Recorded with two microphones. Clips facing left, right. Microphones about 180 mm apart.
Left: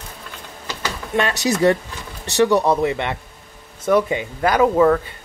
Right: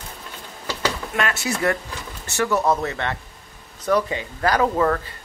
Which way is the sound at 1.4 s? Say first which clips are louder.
Left 7 dB; 40° left (ahead or behind).